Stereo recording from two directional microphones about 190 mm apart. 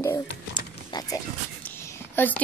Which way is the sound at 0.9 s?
20° left (ahead or behind).